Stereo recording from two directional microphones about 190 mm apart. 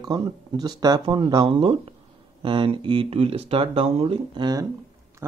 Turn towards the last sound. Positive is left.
turn(degrees=-25)  # may be behind; listen again after turning